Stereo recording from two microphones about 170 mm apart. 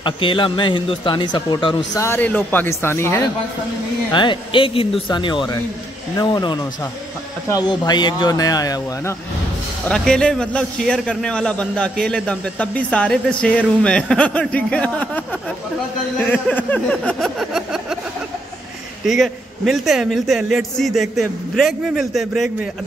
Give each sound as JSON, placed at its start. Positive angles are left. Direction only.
{"t": 0.0, "sound": "a man's voice", "side_deg": 30}
{"t": 2.0, "sound": "a sound", "side_deg": 15}
{"t": 4.1, "sound": "a man's voice", "side_deg": 30}
{"t": 9.8, "sound": "a man's voice", "side_deg": 5}
{"t": 16.2, "sound": "a sound", "side_deg": 10}
{"t": 19.0, "sound": "a man's voice", "side_deg": 0}